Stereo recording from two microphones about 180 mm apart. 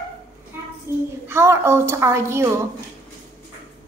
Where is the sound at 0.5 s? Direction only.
15° right (ahead or behind).